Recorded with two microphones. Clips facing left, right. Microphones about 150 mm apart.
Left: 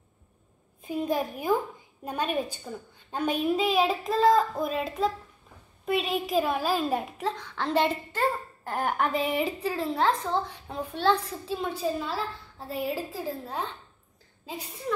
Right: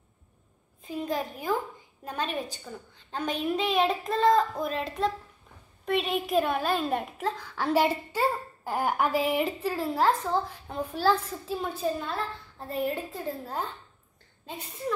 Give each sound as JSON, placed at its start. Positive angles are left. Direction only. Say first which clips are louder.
{"t": 0.8, "sound": "a child's voice", "louder": "left 3 dB", "side_deg": 10}